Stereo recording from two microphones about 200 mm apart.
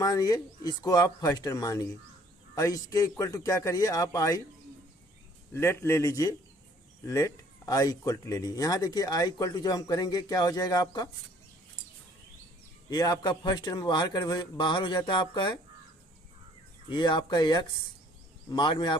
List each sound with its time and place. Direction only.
0.0 s speech: 15° left (ahead or behind)
5.5 s speech: 10° left (ahead or behind)
12.9 s speech: 20° left (ahead or behind)
16.9 s speech: 20° left (ahead or behind)